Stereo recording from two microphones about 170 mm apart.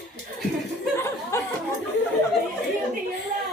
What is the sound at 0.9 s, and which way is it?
Chuckle, 15° left (ahead or behind).